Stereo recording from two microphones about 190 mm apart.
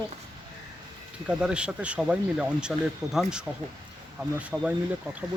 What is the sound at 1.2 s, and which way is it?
Speech, 5° right (ahead or behind).